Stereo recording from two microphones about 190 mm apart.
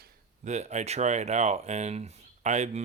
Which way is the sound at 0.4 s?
35° right (ahead or behind).